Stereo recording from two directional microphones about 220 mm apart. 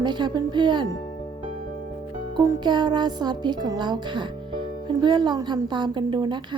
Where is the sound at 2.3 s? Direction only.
15° right (ahead or behind).